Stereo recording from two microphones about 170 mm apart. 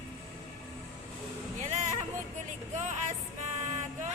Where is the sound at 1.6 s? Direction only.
45° right (ahead or behind).